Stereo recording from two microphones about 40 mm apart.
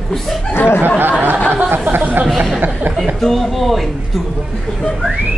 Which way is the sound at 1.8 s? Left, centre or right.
Right.